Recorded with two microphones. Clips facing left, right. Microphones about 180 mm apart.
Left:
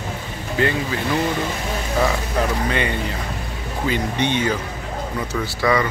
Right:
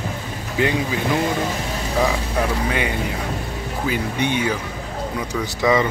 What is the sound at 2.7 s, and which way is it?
Speech, 10° right (ahead or behind).